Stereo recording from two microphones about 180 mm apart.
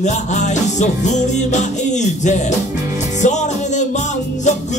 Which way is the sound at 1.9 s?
40° left (ahead or behind).